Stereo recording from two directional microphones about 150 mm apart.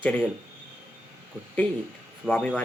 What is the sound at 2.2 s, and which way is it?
Speech, 5° left (ahead or behind).